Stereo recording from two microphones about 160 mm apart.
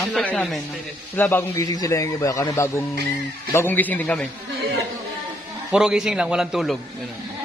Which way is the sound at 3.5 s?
10° left (ahead or behind).